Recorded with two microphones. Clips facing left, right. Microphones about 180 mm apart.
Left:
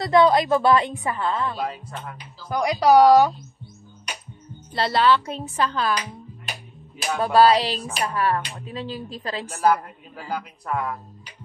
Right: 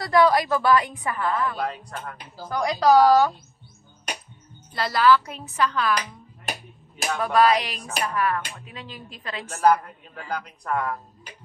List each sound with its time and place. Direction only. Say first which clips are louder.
0.0 s a woman's voice: left 2 dB; 25° left (ahead or behind)
1.6 s a woman's voice: even; 5° left (ahead or behind)
4.7 s a woman's voice: even; 30° left (ahead or behind)
7.2 s speech: left 3 dB; 30° left (ahead or behind)
9.6 s a woman's voice: right 1 dB; 5° left (ahead or behind)